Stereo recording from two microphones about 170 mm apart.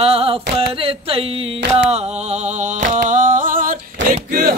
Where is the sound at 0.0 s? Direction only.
35° right (ahead or behind); by 3.7 s 55° right (ahead or behind).